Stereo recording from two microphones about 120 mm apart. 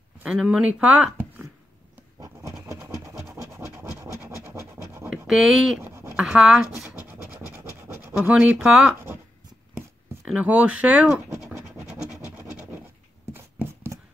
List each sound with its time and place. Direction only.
0.2 s speech: 10° right (ahead or behind)
2.1 s a sound: 30° right (ahead or behind)
3.3 s scratch: 25° right (ahead or behind)
5.1 s speech: 5° right (ahead or behind)
5.8 s a sound: 20° right (ahead or behind)
6.1 s speech: 5° right (ahead or behind)
7.0 s scratch: 15° right (ahead or behind)
8.5 s speech: 5° right (ahead or behind)
10.2 s speech: 10° right (ahead or behind)
12.4 s scratch: 15° right (ahead or behind)
13.3 s a sound: 15° right (ahead or behind)